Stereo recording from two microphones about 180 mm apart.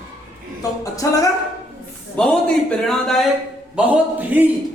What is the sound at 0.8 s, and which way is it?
Speech, 20° left (ahead or behind).